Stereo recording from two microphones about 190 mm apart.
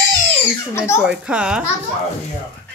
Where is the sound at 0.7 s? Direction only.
15° left (ahead or behind).